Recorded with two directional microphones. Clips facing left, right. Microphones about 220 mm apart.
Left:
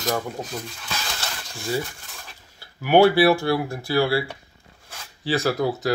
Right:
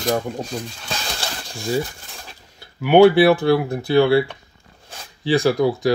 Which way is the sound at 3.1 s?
20° right (ahead or behind).